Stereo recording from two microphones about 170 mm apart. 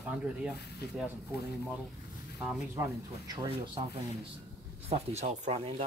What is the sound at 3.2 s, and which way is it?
Speech, 25° right (ahead or behind).